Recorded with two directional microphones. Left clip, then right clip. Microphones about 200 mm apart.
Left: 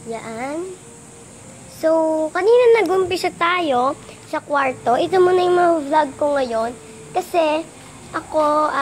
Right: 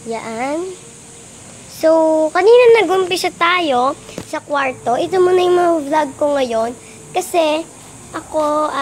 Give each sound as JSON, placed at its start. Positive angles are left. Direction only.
{"t": 0.1, "sound": "speech", "side_deg": -25}
{"t": 1.8, "sound": "speech", "side_deg": -20}
{"t": 2.7, "sound": "speech", "side_deg": 0}
{"t": 5.3, "sound": "speech", "side_deg": -15}
{"t": 8.1, "sound": "speech", "side_deg": -5}